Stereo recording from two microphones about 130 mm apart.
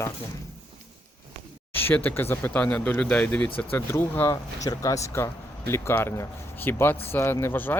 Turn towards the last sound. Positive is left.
turn(degrees=15)  # may be behind; listen again after turning